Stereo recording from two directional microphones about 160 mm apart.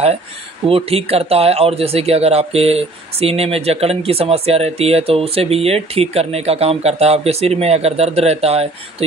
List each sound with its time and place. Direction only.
0.7 s speech: 35° right (ahead or behind)